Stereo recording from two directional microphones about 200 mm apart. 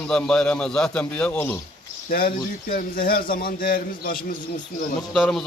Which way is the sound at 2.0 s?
45° left (ahead or behind).